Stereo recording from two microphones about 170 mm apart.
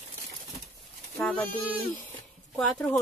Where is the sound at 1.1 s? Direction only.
5° left (ahead or behind).